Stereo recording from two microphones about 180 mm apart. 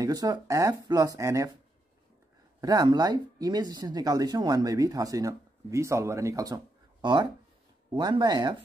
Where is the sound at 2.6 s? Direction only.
20° right (ahead or behind).